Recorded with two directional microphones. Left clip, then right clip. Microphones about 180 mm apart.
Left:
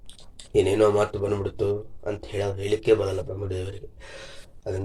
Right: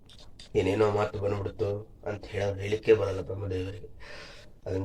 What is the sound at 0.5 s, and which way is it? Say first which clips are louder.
A man's voice: left 6 dB; 50° left (ahead or behind).